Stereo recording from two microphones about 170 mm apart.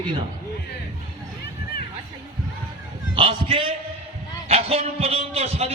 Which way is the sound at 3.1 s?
30° right (ahead or behind).